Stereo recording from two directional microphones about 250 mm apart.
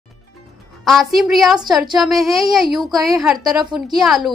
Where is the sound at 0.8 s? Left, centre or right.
Centre.